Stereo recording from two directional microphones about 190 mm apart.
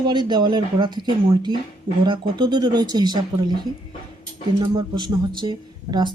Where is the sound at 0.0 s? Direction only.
25° right (ahead or behind).